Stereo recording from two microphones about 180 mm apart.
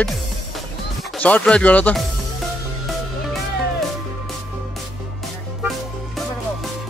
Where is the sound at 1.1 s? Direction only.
5° left (ahead or behind).